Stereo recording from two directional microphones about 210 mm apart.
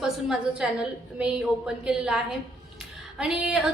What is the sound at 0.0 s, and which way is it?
A woman's voice, 5° right (ahead or behind).